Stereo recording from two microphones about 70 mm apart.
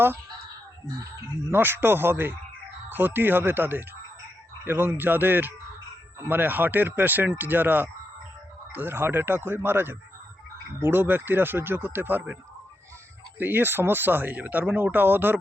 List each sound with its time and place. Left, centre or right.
1.5 s speech: right
13.4 s speech: right